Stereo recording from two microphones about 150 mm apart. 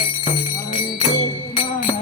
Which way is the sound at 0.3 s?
35° left (ahead or behind).